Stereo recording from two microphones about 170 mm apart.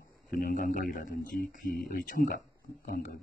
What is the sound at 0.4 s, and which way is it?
Speech, 55° left (ahead or behind).